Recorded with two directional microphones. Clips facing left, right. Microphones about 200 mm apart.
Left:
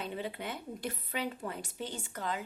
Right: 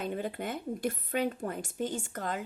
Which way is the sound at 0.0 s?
50° right (ahead or behind).